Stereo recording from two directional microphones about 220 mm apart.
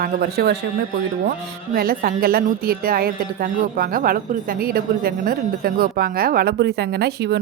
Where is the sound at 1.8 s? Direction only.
45° right (ahead or behind).